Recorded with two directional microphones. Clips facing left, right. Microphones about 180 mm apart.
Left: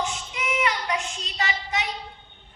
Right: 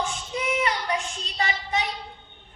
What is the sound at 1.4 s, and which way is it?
Child singing, 30° right (ahead or behind).